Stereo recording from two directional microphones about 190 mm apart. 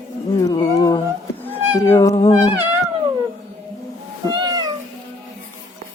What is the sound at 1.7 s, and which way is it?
Speech, 15° left (ahead or behind).